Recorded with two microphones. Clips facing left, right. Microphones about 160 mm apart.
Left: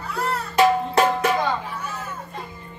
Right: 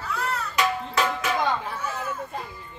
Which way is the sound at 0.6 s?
55° left (ahead or behind).